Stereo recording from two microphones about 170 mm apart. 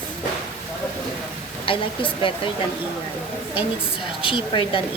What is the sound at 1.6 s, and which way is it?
Speech, 30° left (ahead or behind).